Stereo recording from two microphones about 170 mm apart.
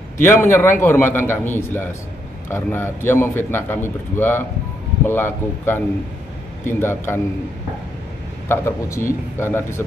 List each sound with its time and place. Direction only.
0.2 s a man's voice: 15° left (ahead or behind)
6.8 s a man's voice: 15° left (ahead or behind)
8.5 s a man's voice: 15° left (ahead or behind)